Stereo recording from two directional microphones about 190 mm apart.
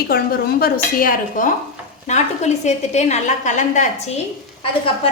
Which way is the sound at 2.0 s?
35° left (ahead or behind).